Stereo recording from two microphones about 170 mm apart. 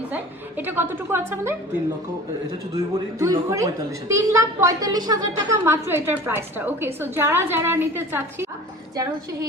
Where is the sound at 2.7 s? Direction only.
20° right (ahead or behind).